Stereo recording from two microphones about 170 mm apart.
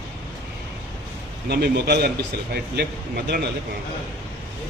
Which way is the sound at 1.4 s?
70° right (ahead or behind).